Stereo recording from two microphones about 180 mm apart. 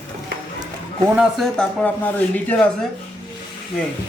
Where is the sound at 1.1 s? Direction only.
Centre (ahead or behind).